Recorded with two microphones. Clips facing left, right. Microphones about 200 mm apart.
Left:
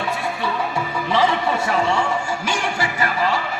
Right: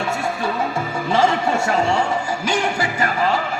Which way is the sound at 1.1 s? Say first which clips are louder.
Right 2 dB; 45° right (ahead or behind).